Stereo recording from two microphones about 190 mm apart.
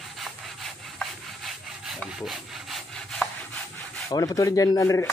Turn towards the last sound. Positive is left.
turn(degrees=20)  # may be behind; listen again after turning